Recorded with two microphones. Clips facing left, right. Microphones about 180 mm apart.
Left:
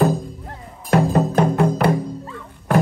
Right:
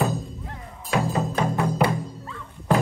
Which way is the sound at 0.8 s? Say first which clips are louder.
Left 7 dB; 55° left (ahead or behind).